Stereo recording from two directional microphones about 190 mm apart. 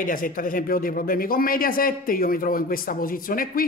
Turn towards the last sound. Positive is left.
turn(degrees=50)  # may be behind; listen again after turning